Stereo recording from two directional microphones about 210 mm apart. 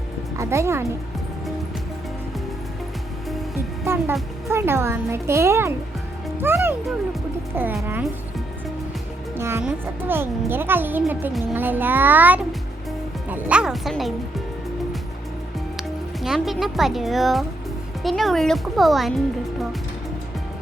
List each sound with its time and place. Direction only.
0.3 s a child's voice: 15° right (ahead or behind)
3.2 s music: centre (ahead or behind)
4.4 s a child's voice: 10° right (ahead or behind)
9.4 s a child's voice: 10° right (ahead or behind)
16.2 s speech: centre (ahead or behind)